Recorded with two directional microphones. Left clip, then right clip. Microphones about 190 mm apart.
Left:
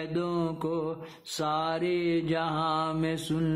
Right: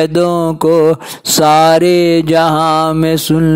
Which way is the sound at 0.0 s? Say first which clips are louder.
Right 19 dB; 55° right (ahead or behind).